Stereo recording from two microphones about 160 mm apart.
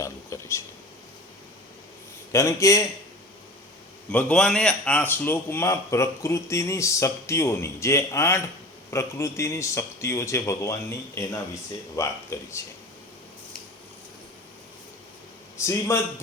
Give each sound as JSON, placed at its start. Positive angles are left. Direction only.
{"t": 0.0, "sound": "a sound", "side_deg": 15}
{"t": 2.3, "sound": "a man's voice", "side_deg": 20}
{"t": 4.1, "sound": "speech", "side_deg": 5}
{"t": 15.6, "sound": "speech", "side_deg": 15}